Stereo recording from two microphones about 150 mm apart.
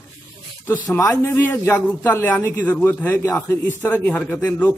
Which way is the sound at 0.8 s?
20° left (ahead or behind).